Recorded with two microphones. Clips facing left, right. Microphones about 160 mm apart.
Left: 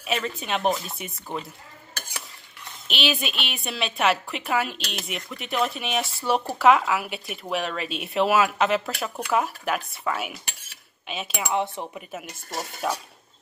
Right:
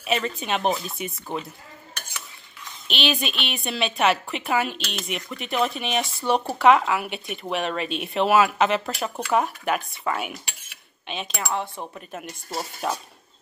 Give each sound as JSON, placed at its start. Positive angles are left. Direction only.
{"t": 0.0, "sound": "a woman's voice", "side_deg": 0}
{"t": 2.9, "sound": "a woman's voice", "side_deg": 5}
{"t": 11.5, "sound": "speech", "side_deg": 20}
{"t": 11.9, "sound": "a woman's voice", "side_deg": 5}